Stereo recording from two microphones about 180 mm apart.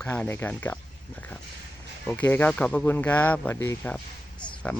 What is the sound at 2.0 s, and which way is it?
Speech, 10° left (ahead or behind).